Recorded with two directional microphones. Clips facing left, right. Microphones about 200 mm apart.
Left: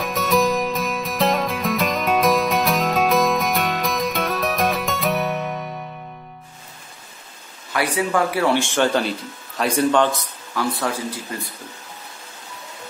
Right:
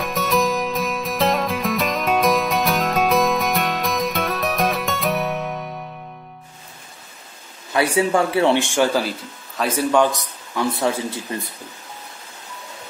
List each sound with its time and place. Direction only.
0.0 s music: centre (ahead or behind)
7.7 s a man's voice: 25° right (ahead or behind); by 10.0 s 5° right (ahead or behind)
10.1 s speech: 20° right (ahead or behind)